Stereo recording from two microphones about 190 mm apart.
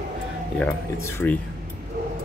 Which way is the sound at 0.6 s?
15° left (ahead or behind).